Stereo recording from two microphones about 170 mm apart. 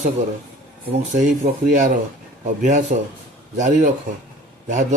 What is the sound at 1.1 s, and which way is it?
A man's voice, 45° right (ahead or behind).